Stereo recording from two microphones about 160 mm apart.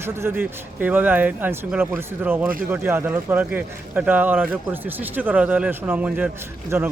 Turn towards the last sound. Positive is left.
turn(degrees=-15)  # may be behind; listen again after turning